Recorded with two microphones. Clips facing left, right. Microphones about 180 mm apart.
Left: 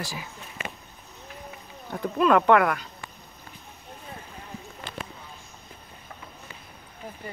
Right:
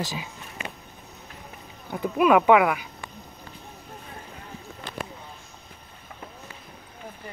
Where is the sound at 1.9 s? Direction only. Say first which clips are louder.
Right 2 dB; 10° right (ahead or behind).